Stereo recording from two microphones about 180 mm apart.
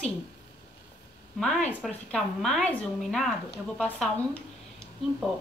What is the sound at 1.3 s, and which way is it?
A woman's voice, 5° left (ahead or behind).